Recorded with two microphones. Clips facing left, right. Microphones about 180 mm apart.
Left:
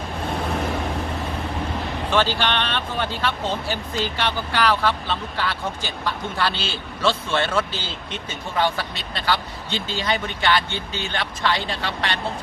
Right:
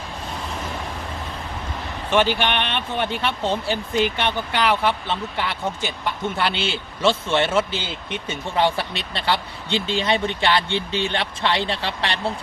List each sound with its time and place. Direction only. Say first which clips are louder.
2.0 s speech: right 2 dB; 15° right (ahead or behind)